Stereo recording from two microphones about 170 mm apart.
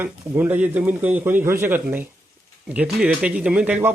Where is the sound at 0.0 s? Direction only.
10° right (ahead or behind).